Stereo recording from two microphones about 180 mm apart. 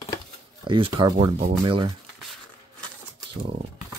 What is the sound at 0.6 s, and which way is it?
Speech, 25° right (ahead or behind).